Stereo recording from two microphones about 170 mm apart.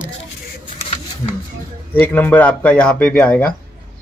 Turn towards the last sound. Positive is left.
turn(degrees=5)  # may be behind; listen again after turning